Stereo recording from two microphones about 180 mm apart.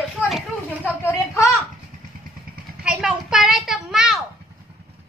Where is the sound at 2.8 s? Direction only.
5° right (ahead or behind).